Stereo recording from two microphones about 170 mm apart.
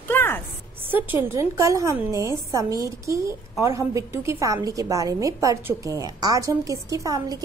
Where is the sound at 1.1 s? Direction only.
15° right (ahead or behind).